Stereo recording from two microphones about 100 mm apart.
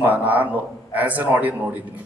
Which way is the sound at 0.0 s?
15° right (ahead or behind).